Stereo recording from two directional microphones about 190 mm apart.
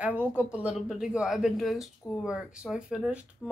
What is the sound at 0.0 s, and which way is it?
Speech, 10° right (ahead or behind).